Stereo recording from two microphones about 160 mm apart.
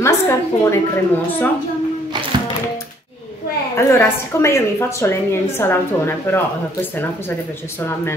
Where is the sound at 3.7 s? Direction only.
15° left (ahead or behind).